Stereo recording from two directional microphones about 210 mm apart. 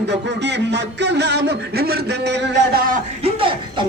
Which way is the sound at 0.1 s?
55° right (ahead or behind).